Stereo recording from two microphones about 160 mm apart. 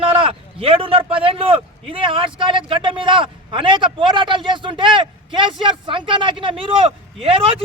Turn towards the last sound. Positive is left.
turn(degrees=-35)  # may be behind; listen again after turning